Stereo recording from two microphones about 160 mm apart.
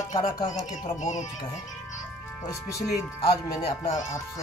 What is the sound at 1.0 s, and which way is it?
Speech, 50° left (ahead or behind).